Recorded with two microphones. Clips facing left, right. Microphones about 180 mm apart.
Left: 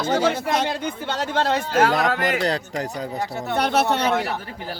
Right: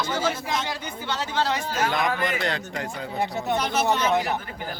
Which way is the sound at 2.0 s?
75° left (ahead or behind).